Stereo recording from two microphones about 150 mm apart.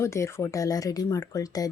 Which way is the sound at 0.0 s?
20° left (ahead or behind).